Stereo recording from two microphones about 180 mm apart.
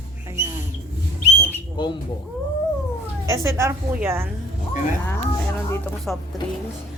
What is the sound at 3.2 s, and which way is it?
A woman's voice, 15° right (ahead or behind).